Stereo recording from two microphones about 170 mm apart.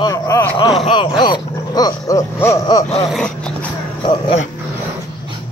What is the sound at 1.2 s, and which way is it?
Wild animals, 25° left (ahead or behind).